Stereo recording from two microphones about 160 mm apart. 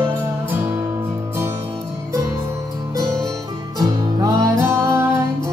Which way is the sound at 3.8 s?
20° right (ahead or behind).